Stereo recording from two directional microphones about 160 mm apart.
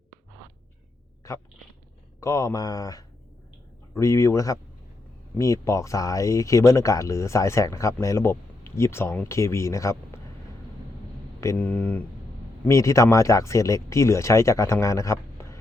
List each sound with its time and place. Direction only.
1.2 s speech: 20° left (ahead or behind)
11.3 s speech: 15° left (ahead or behind)